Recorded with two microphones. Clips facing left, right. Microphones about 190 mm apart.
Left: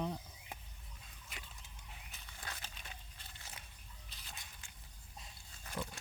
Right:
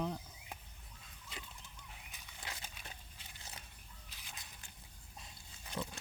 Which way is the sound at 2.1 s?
15° right (ahead or behind).